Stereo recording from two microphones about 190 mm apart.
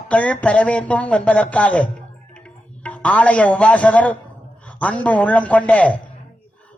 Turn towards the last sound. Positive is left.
turn(degrees=5)  # may be behind; listen again after turning